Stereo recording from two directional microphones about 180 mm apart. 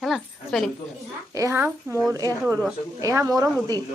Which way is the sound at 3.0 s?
20° right (ahead or behind).